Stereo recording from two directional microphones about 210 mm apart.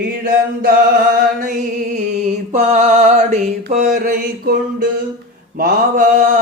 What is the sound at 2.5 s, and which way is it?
Mantra, 35° right (ahead or behind).